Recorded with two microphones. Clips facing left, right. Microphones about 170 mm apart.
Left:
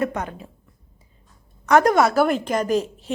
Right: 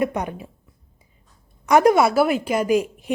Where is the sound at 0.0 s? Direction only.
15° right (ahead or behind).